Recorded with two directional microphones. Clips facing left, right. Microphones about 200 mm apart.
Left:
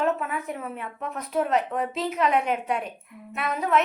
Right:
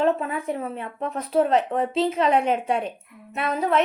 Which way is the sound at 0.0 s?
30° right (ahead or behind).